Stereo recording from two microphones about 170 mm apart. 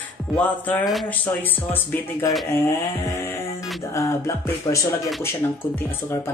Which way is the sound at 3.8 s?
15° left (ahead or behind).